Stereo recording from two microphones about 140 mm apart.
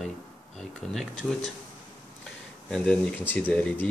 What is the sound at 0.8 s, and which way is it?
Speech, 5° left (ahead or behind).